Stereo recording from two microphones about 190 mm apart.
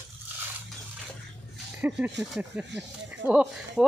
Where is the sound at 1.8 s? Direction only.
5° right (ahead or behind).